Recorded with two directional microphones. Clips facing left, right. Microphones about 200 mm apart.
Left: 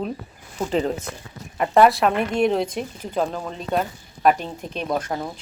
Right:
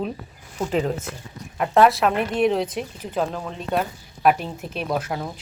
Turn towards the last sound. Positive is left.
turn(degrees=-5)  # may be behind; listen again after turning